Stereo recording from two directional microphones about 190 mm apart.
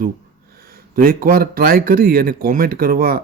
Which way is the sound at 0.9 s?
50° right (ahead or behind).